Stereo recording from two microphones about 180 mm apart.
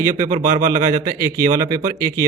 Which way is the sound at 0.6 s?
20° right (ahead or behind).